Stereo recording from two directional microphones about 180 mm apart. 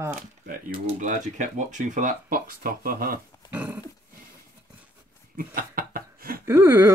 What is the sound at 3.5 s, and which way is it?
Speech, 10° right (ahead or behind).